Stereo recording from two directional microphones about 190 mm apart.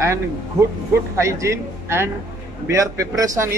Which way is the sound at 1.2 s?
15° right (ahead or behind).